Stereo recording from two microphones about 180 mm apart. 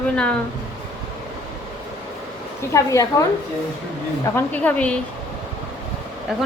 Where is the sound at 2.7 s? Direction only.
15° left (ahead or behind).